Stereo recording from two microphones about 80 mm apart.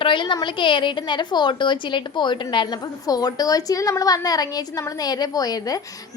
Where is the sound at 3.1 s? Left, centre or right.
Left.